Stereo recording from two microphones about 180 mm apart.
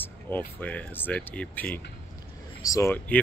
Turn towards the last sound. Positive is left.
turn(degrees=10)  # may be behind; listen again after turning